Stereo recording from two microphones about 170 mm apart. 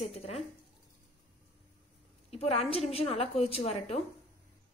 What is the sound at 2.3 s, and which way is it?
A woman's voice, 35° left (ahead or behind).